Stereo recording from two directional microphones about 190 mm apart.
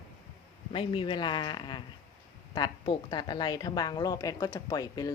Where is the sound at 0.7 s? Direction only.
30° left (ahead or behind).